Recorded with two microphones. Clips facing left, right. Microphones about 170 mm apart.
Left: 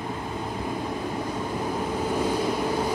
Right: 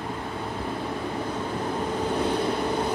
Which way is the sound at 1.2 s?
10° left (ahead or behind).